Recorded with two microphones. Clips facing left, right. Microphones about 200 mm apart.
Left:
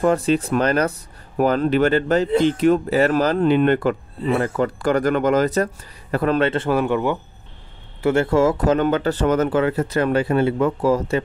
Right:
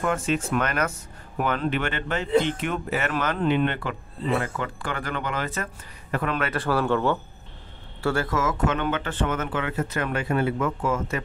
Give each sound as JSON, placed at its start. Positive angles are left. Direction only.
{"t": 0.0, "sound": "speech", "side_deg": 35}
{"t": 6.5, "sound": "speech", "side_deg": 20}